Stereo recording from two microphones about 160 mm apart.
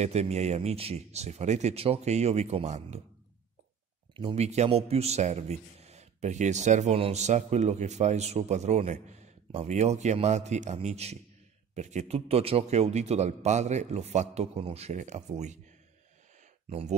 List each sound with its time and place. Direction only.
0.0 s a man's voice: 45° right (ahead or behind)
4.1 s a man's voice: 30° right (ahead or behind)
16.6 s speech: 40° right (ahead or behind)